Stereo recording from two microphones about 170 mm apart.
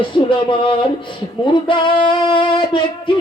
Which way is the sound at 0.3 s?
30° left (ahead or behind).